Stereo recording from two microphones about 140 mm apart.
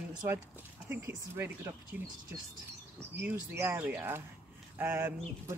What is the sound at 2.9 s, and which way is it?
Speech, 15° right (ahead or behind).